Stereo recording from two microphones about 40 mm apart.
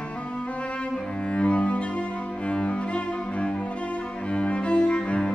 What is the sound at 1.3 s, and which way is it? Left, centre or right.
Cello, left.